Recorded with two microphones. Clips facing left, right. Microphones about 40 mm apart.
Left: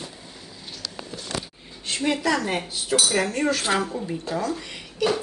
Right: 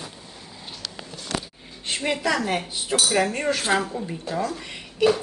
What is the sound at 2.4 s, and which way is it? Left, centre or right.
Speech, centre.